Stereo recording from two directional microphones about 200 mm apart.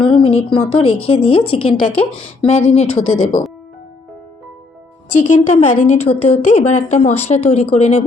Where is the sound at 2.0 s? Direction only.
30° left (ahead or behind).